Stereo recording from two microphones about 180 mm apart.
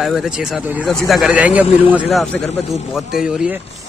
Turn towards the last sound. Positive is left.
turn(degrees=-5)  # may be behind; listen again after turning